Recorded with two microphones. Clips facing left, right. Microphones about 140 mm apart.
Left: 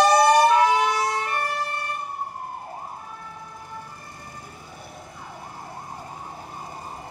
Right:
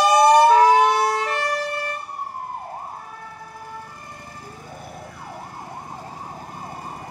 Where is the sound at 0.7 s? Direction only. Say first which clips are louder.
Right 5 dB; 60° right (ahead or behind); by 1.5 s 75° right (ahead or behind).